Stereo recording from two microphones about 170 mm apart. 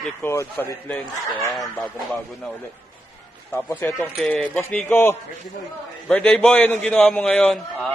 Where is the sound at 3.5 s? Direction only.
15° left (ahead or behind).